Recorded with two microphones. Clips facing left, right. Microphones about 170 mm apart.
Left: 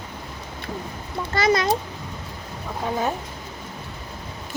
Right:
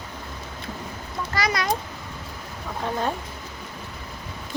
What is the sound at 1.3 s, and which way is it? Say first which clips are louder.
Speech: left 5 dB; 25° left (ahead or behind).